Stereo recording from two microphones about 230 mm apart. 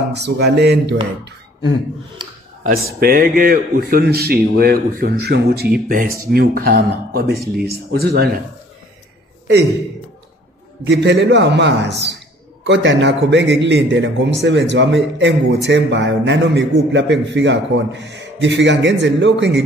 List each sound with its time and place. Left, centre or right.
0.1 s a man's voice: right
2.6 s a man's voice: right
10.9 s a man's voice: right